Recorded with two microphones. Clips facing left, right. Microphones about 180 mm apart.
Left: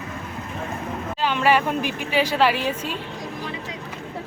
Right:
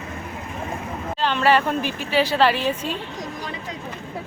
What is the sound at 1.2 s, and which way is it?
Speech, 10° left (ahead or behind).